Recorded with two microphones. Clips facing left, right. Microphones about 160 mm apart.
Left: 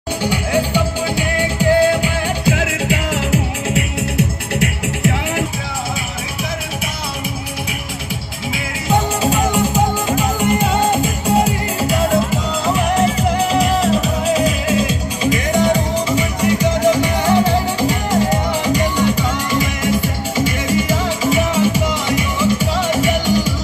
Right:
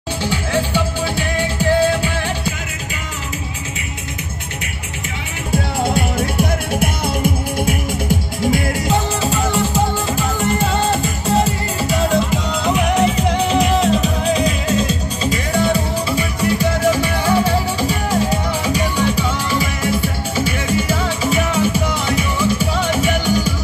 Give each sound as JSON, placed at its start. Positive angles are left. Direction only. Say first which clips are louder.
{"t": 0.2, "sound": "music", "louder": "left 2 dB", "side_deg": 15}
{"t": 2.6, "sound": "music", "louder": "left 10 dB", "side_deg": 80}
{"t": 7.6, "sound": "music", "louder": "right 7 dB", "side_deg": -50}
{"t": 9.2, "sound": "music", "louder": "left 2 dB", "side_deg": 15}